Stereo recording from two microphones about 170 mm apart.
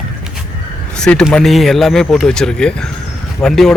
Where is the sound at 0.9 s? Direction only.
5° left (ahead or behind).